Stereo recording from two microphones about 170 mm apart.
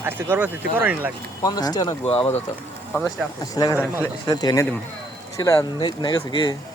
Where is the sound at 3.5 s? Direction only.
20° left (ahead or behind).